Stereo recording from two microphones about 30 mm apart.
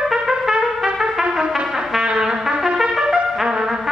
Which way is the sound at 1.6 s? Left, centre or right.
Centre.